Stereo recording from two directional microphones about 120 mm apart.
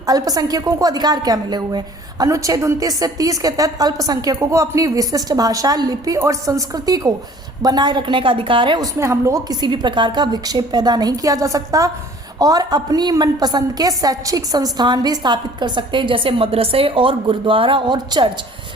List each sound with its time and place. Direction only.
0.0 s a woman's voice: 30° right (ahead or behind)
8.8 s a woman's voice: 25° right (ahead or behind)